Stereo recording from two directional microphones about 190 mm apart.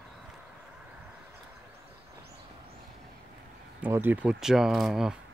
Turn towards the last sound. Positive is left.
turn(degrees=-5)  # may be behind; listen again after turning